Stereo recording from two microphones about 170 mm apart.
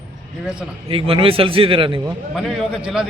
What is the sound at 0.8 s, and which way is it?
A man's voice, 30° right (ahead or behind).